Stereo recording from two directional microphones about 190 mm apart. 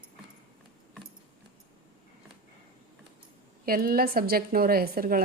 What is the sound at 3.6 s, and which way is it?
A woman's voice, 50° right (ahead or behind).